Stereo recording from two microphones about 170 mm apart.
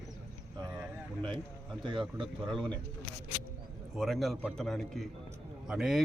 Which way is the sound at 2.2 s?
Centre (ahead or behind).